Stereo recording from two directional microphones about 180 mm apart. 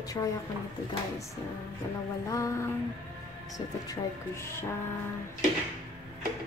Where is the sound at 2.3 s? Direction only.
15° left (ahead or behind).